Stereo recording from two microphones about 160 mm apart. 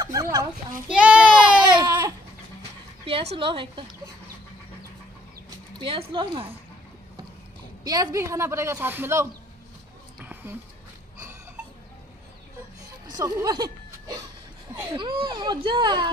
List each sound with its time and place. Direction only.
0.0 s children playing: 20° right (ahead or behind)
0.8 s child singing: 5° right (ahead or behind)
1.8 s a sound: 20° right (ahead or behind)
3.1 s speech: 35° right (ahead or behind)
5.8 s speech: 30° right (ahead or behind)
7.8 s a man's voice: 25° right (ahead or behind)
10.2 s a sound: 10° right (ahead or behind)
13.0 s chuckle: 25° right (ahead or behind)
14.9 s a child's voice: 30° right (ahead or behind)